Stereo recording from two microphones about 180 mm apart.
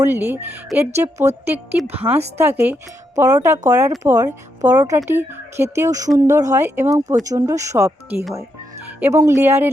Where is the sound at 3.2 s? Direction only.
15° right (ahead or behind).